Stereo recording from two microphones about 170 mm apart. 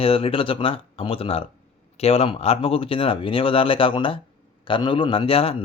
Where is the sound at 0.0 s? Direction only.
35° left (ahead or behind).